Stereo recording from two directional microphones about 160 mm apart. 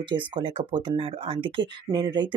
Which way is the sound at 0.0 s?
30° right (ahead or behind).